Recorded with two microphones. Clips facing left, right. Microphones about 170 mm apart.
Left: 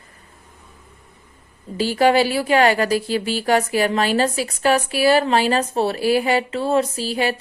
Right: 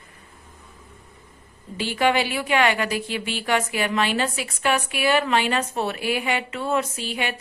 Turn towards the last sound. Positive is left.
turn(degrees=35)  # may be behind; listen again after turning